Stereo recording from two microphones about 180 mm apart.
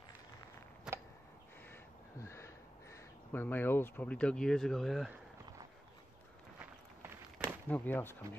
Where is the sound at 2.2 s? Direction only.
15° left (ahead or behind).